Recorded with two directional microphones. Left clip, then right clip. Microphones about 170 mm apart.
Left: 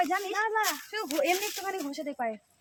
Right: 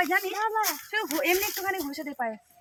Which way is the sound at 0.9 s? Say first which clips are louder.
Right 3 dB; 90° left.